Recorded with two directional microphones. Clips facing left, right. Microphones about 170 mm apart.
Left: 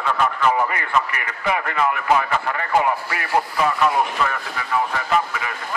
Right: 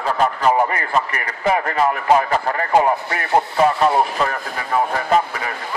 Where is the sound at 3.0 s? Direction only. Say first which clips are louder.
Right 3 dB; 25° right (ahead or behind).